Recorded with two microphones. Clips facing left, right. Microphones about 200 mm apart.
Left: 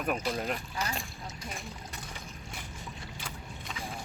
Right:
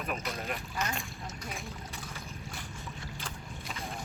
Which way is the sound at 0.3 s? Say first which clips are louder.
Left 4 dB; 35° left (ahead or behind).